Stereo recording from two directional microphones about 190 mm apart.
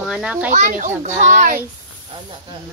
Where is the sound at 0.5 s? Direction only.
45° right (ahead or behind).